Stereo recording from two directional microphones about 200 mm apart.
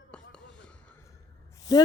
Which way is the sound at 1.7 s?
20° left (ahead or behind).